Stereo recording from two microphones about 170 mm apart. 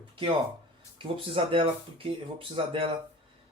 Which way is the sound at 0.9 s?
30° right (ahead or behind).